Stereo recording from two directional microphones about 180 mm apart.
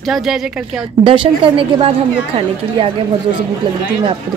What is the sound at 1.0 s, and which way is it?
A woman's voice, 30° right (ahead or behind).